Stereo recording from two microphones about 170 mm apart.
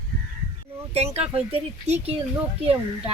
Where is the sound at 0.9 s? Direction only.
35° right (ahead or behind).